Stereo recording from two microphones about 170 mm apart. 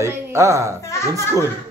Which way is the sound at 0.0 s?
15° right (ahead or behind).